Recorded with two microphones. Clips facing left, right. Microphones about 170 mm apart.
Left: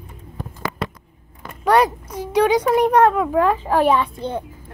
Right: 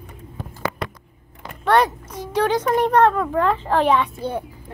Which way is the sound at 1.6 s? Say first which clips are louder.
Left 2 dB; 10° left (ahead or behind).